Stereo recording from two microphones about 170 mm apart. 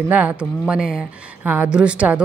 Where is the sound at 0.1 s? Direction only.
10° right (ahead or behind).